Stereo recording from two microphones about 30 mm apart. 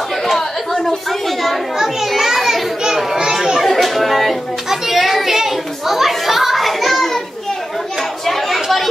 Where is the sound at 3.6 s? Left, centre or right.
Centre.